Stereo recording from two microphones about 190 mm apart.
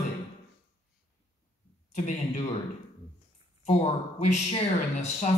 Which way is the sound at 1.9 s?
40° left (ahead or behind).